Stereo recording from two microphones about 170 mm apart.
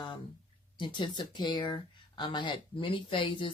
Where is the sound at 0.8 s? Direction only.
30° left (ahead or behind).